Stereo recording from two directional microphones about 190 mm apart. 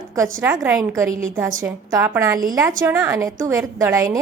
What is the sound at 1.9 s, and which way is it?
A woman's voice, 10° right (ahead or behind).